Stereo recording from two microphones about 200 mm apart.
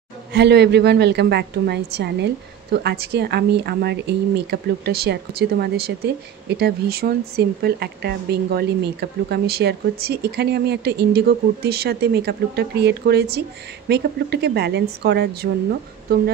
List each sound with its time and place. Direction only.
0.3 s a woman's voice: 55° right (ahead or behind)